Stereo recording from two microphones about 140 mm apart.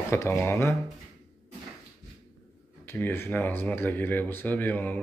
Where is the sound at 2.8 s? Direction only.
15° left (ahead or behind).